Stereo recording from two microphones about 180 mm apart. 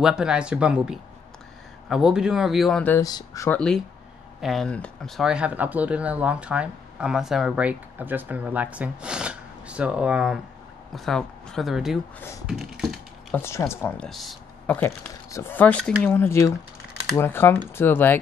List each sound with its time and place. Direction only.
0.0 s speech: 5° right (ahead or behind)
3.0 s speech: 20° left (ahead or behind)
3.4 s speech: 5° left (ahead or behind)
12.4 s typing: 5° right (ahead or behind)
13.4 s speech: 15° left (ahead or behind)